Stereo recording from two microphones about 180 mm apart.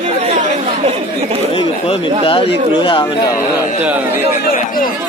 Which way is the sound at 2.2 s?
30° left (ahead or behind).